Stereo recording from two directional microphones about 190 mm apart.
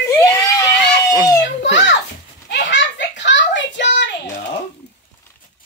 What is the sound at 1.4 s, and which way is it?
Children playing, 70° left (ahead or behind).